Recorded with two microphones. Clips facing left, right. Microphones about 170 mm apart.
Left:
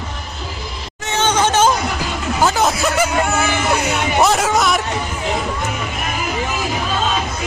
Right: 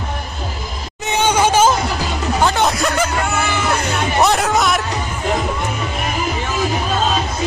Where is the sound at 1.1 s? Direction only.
10° right (ahead or behind).